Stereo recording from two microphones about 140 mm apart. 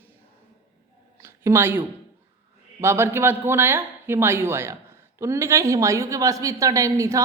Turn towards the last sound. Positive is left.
turn(degrees=-20)  # may be behind; listen again after turning